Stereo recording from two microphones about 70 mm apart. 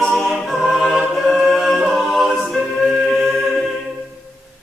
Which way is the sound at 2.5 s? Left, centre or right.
Centre.